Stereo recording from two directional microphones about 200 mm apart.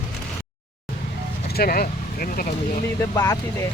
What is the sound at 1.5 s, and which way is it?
Speech, 45° left (ahead or behind).